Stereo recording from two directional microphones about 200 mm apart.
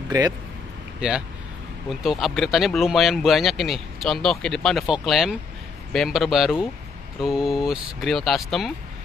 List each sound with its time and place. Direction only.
0.1 s speech: 20° right (ahead or behind)
1.9 s speech: centre (ahead or behind)